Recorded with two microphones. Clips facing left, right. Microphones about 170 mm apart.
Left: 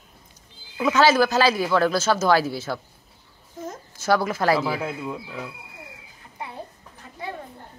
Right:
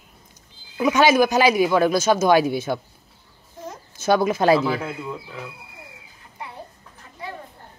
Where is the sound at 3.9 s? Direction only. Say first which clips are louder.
Right 3 dB; 20° right (ahead or behind).